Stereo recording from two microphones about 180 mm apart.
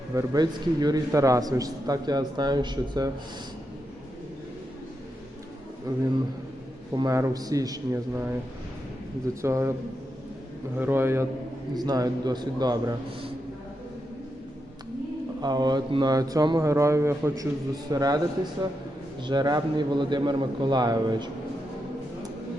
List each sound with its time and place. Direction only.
0.1 s a man's voice: 20° right (ahead or behind)
5.9 s a man's voice: 20° right (ahead or behind)
9.4 s a man's voice: 15° right (ahead or behind)
10.8 s a man's voice: 10° right (ahead or behind)
15.4 s a man's voice: 25° right (ahead or behind)
19.2 s a man's voice: 25° right (ahead or behind)